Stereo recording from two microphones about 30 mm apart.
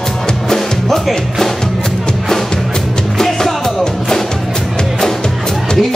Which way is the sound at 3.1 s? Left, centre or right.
Centre.